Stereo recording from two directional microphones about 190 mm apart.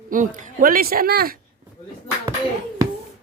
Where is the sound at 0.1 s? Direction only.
45° right (ahead or behind).